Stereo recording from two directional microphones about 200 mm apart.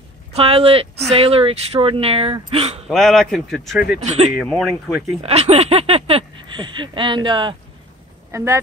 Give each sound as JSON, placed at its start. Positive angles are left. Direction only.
{"t": 0.3, "sound": "speech", "side_deg": -30}
{"t": 2.9, "sound": "a man's voice", "side_deg": 0}
{"t": 4.0, "sound": "speech", "side_deg": -35}
{"t": 4.5, "sound": "a man's voice", "side_deg": 0}
{"t": 5.2, "sound": "speech", "side_deg": -30}
{"t": 8.3, "sound": "speech", "side_deg": -15}